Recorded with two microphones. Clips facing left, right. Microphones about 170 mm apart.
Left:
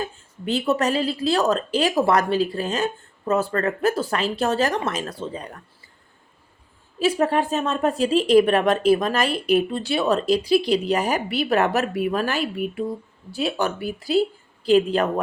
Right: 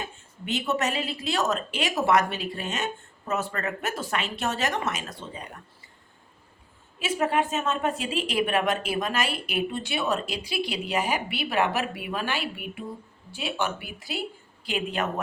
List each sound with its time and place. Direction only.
0.0 s a woman's voice: 35° left (ahead or behind)
7.0 s a woman's voice: 35° left (ahead or behind)